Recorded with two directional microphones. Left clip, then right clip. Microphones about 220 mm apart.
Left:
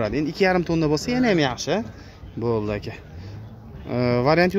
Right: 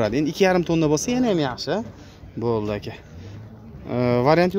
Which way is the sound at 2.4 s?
5° right (ahead or behind).